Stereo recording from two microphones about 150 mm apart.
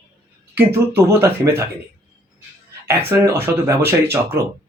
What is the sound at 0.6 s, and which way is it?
A man's voice, 15° right (ahead or behind).